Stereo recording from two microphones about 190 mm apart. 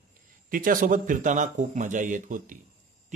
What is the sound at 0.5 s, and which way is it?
Speech, 45° right (ahead or behind).